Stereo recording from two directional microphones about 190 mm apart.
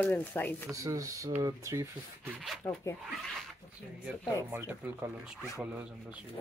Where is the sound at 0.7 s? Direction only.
15° right (ahead or behind).